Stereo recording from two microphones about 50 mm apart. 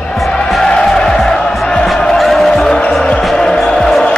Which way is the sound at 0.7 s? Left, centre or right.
Centre.